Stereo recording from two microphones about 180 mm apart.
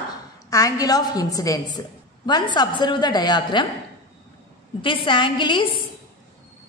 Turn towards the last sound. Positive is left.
turn(degrees=30)  # may be behind; listen again after turning